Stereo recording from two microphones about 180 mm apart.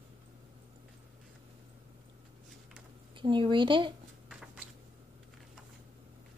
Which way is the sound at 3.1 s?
25° right (ahead or behind).